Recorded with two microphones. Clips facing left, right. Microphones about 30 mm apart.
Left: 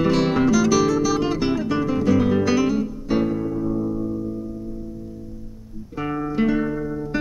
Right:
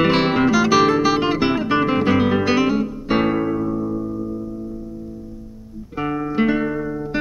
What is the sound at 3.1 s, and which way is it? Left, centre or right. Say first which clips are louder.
Music: right 3 dB; right.